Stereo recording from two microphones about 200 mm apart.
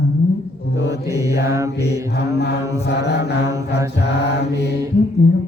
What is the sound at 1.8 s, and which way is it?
Mantra, 55° left (ahead or behind).